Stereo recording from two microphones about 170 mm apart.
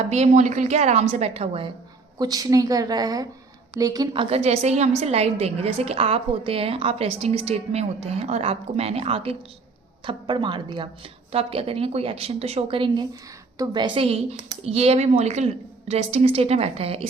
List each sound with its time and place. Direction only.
0.1 s a woman's voice: 45° right (ahead or behind)
2.1 s a woman's voice: 20° right (ahead or behind)